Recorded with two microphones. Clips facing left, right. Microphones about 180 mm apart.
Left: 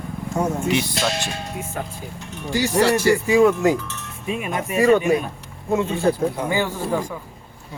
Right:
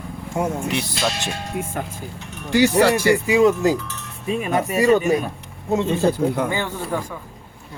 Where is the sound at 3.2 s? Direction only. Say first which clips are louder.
Left 1 dB; 20° right (ahead or behind).